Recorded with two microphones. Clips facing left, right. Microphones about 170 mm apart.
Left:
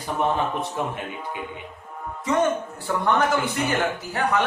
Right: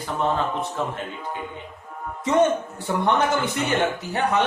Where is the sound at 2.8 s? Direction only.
20° right (ahead or behind).